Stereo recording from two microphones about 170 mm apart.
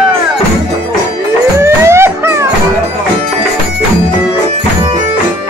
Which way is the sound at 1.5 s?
15° right (ahead or behind).